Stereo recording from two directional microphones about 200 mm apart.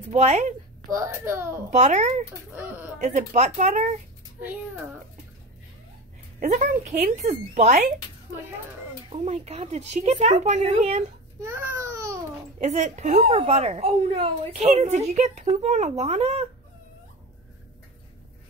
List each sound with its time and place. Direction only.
0.1 s speech: 35° right (ahead or behind)
0.8 s a child's voice: 15° right (ahead or behind)
1.7 s speech: 35° right (ahead or behind)
2.5 s a child's voice: 10° right (ahead or behind)
3.0 s speech: 35° right (ahead or behind)
4.4 s a child's voice: 10° right (ahead or behind)
6.4 s speech: 40° right (ahead or behind)
9.1 s speech: 35° right (ahead or behind)
11.4 s speech: 15° right (ahead or behind)
12.5 s speech: 35° right (ahead or behind)